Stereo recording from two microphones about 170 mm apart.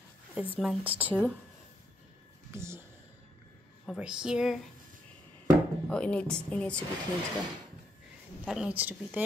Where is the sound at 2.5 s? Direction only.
15° right (ahead or behind).